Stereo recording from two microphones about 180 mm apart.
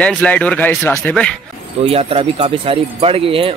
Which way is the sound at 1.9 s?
30° right (ahead or behind).